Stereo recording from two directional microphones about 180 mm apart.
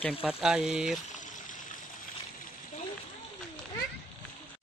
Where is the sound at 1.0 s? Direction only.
45° left (ahead or behind).